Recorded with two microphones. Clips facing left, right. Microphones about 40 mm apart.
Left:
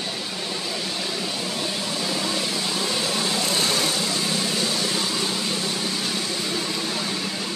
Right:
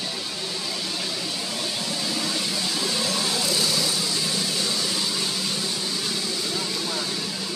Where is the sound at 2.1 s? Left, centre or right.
Centre.